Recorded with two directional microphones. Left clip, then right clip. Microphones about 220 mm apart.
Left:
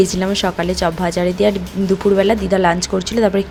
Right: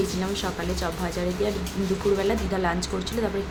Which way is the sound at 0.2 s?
35° left (ahead or behind).